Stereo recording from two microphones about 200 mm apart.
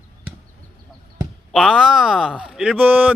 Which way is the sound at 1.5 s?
Centre (ahead or behind).